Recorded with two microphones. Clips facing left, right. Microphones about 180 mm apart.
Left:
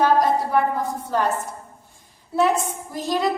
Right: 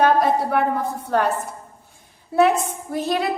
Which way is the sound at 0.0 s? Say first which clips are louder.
Right 1 dB; 60° right (ahead or behind).